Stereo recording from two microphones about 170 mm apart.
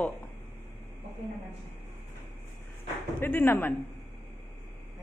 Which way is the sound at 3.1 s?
10° left (ahead or behind).